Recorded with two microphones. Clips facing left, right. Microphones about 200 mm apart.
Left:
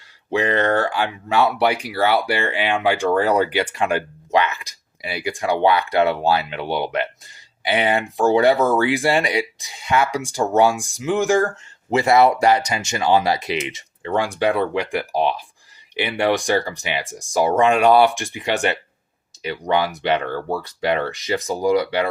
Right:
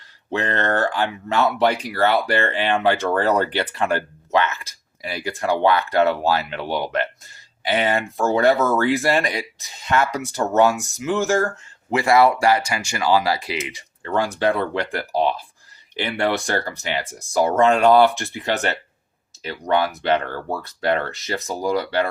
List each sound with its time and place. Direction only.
0.3 s speech: 10° left (ahead or behind)